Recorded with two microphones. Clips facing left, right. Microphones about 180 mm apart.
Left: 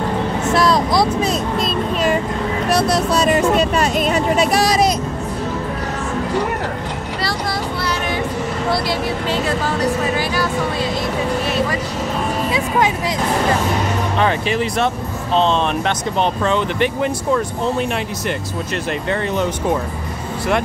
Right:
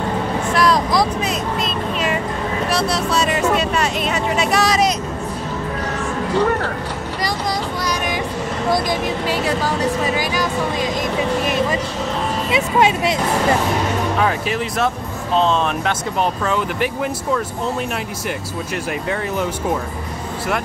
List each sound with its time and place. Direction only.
0.5 s vehicle: 25° left (ahead or behind)
1.2 s vehicle: 35° left (ahead or behind)
2.9 s speech: 40° left (ahead or behind)
9.3 s speech: 15° right (ahead or behind)
11.4 s music: 15° right (ahead or behind)
12.4 s speech: 25° right (ahead or behind)
14.1 s speech: centre (ahead or behind)